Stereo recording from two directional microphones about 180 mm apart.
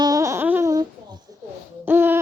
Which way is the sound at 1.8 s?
10° right (ahead or behind).